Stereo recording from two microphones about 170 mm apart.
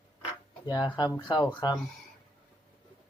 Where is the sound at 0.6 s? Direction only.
25° left (ahead or behind).